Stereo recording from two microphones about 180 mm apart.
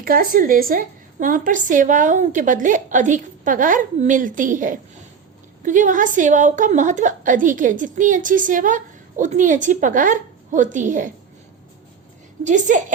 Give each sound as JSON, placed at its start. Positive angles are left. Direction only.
{"t": 0.0, "sound": "a woman's voice", "side_deg": -50}
{"t": 12.5, "sound": "a woman's voice", "side_deg": -45}